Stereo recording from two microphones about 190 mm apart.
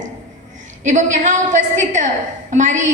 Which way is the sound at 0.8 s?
40° right (ahead or behind).